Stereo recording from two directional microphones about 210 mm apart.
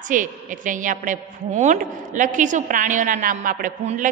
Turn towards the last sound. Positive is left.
turn(degrees=-40)  # may be behind; listen again after turning